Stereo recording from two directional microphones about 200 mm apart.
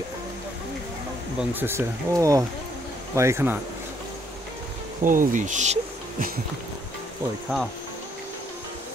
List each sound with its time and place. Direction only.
1.4 s speech: 10° right (ahead or behind)
5.0 s speech: 40° right (ahead or behind)